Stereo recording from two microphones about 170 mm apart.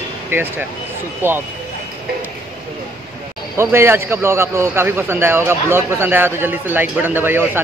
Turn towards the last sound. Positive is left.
turn(degrees=-10)  # may be behind; listen again after turning